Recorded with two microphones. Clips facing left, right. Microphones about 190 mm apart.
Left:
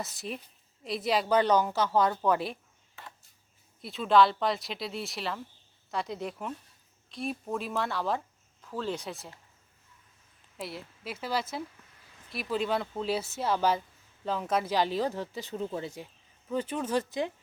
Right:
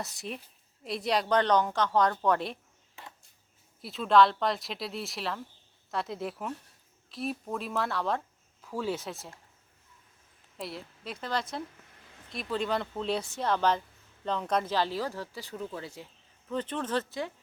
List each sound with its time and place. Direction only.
0.0 s a woman's voice: centre (ahead or behind)
3.8 s a woman's voice: centre (ahead or behind)
10.6 s a woman's voice: centre (ahead or behind); by 16.0 s 20° left (ahead or behind)
16.5 s speech: 10° left (ahead or behind)